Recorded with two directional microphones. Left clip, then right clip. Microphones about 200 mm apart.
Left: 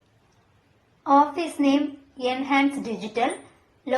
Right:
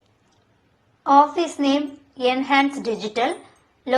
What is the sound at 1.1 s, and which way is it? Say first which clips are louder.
A woman's voice: right 4 dB; 20° right (ahead or behind).